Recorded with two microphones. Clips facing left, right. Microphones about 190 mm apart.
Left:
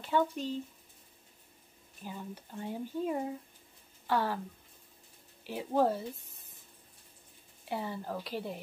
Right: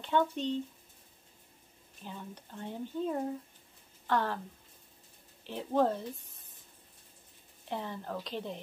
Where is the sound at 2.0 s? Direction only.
5° left (ahead or behind).